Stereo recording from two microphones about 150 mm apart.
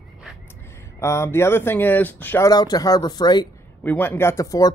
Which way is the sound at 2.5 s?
25° left (ahead or behind).